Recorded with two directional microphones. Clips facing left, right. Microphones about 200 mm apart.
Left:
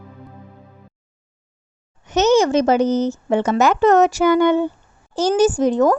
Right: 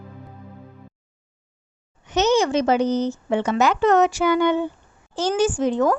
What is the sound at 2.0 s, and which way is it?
Speech, 45° left (ahead or behind).